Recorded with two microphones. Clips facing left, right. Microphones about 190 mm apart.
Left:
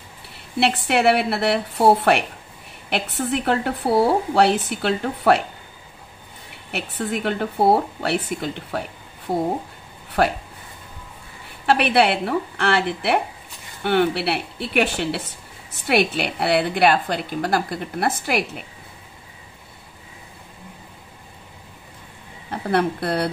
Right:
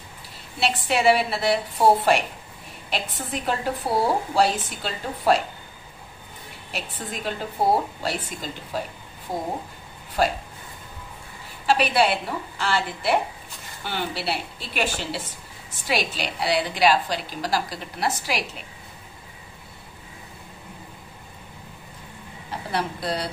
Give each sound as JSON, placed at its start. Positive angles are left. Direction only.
{"t": 0.6, "sound": "a woman's voice", "side_deg": 65}
{"t": 6.7, "sound": "a woman's voice", "side_deg": 65}
{"t": 10.2, "sound": "a woman's voice", "side_deg": 65}
{"t": 11.6, "sound": "a woman's voice", "side_deg": 60}
{"t": 22.5, "sound": "speech", "side_deg": 60}